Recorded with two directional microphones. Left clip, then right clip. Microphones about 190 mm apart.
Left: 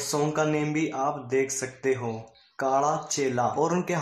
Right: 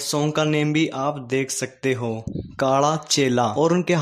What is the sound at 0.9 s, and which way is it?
Speech, 50° right (ahead or behind).